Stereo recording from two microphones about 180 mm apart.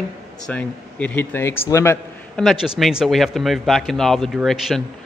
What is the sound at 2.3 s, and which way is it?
Speech, centre (ahead or behind).